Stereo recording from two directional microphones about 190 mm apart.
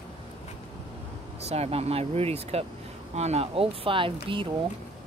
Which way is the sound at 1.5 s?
35° right (ahead or behind).